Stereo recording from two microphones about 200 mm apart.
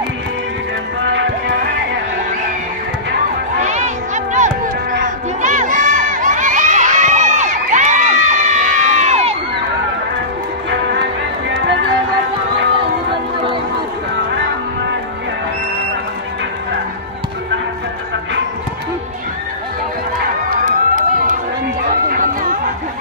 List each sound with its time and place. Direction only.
1.0 s music: 65° right (ahead or behind)
3.6 s a sound: 35° right (ahead or behind)
5.0 s crowd: 40° right (ahead or behind)
10.7 s music: 60° right (ahead or behind)
20.4 s run: 40° right (ahead or behind)